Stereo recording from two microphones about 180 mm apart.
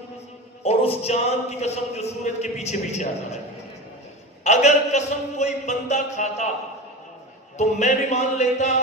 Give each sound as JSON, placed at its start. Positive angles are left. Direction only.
{"t": 0.7, "sound": "speech", "side_deg": 35}
{"t": 4.5, "sound": "speech", "side_deg": 40}
{"t": 7.5, "sound": "speech", "side_deg": 40}